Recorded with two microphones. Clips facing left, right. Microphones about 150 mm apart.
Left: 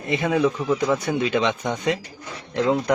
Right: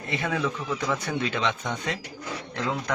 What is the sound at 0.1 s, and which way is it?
Speech, 20° left (ahead or behind).